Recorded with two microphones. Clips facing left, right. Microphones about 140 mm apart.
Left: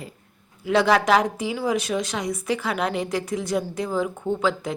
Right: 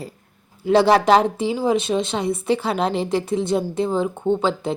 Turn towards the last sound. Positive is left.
turn(degrees=-30)  # may be behind; listen again after turning